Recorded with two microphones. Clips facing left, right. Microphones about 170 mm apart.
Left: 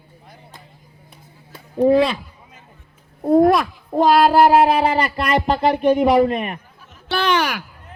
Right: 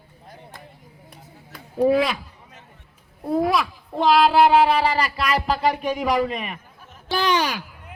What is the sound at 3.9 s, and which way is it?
Child singing, 45° left (ahead or behind).